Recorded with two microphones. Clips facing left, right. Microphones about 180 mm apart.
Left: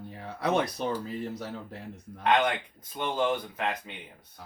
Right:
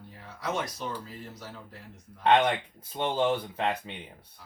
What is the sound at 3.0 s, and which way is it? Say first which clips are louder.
Speech: right 1 dB; 30° right (ahead or behind).